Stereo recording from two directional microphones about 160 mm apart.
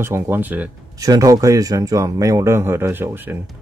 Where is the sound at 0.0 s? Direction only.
15° right (ahead or behind).